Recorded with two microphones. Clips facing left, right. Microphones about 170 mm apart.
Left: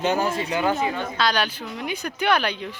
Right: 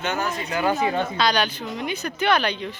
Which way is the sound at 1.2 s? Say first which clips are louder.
Left 2 dB; 5° left (ahead or behind).